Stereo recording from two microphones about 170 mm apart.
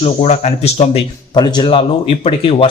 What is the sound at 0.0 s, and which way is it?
Speech, 40° left (ahead or behind).